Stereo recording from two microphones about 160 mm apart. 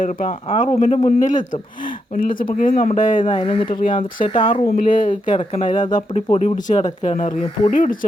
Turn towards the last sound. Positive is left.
turn(degrees=55)  # may be behind; listen again after turning